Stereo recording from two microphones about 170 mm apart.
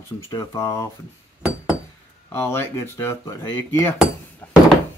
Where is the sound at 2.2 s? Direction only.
15° left (ahead or behind).